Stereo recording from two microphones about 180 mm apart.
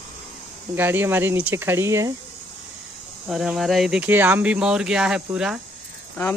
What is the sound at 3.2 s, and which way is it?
Speech, centre (ahead or behind).